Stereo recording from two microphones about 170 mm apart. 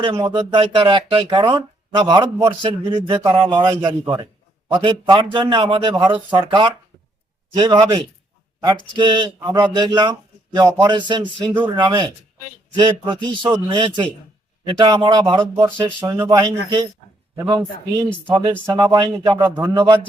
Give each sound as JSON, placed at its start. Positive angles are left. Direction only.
{"t": 0.2, "sound": "a man's voice", "side_deg": -30}
{"t": 3.2, "sound": "a man's voice", "side_deg": -20}
{"t": 15.8, "sound": "speech", "side_deg": -15}
{"t": 19.4, "sound": "speech", "side_deg": -10}
{"t": 19.7, "sound": "speech", "side_deg": -25}